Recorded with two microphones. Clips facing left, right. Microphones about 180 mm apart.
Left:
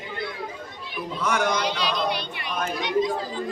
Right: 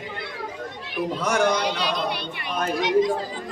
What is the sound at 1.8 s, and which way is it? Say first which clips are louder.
Singing: even; 55° right (ahead or behind).